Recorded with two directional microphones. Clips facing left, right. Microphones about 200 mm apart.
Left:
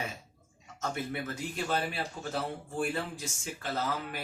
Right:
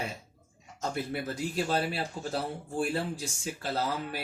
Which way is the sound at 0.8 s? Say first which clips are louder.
Right 2 dB; 35° right (ahead or behind).